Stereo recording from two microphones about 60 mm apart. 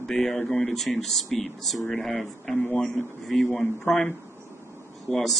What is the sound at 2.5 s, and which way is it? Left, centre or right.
Speech, left.